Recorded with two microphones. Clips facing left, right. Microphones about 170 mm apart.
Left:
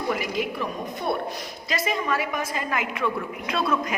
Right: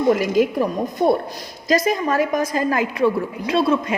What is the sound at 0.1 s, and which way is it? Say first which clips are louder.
A woman's voice: right 10 dB; 45° right (ahead or behind).